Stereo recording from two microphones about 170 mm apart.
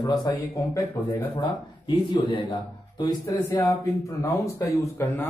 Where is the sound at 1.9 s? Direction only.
30° left (ahead or behind).